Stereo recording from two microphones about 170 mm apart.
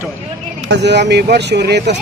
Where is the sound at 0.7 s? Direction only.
85° right.